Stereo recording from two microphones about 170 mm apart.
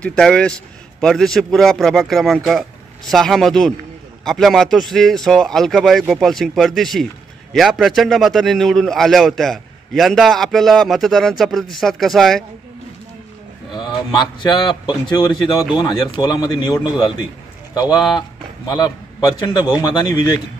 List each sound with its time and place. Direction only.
0.0 s a man's voice: 5° left (ahead or behind)
13.7 s a man's voice: 25° left (ahead or behind)
18.7 s a man's voice: 25° left (ahead or behind)